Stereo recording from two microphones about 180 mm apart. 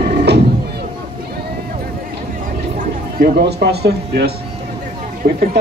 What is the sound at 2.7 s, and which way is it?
A man's voice, 60° right (ahead or behind).